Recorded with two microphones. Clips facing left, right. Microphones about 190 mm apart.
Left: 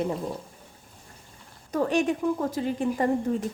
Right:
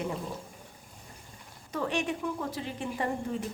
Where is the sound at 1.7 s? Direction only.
45° left (ahead or behind).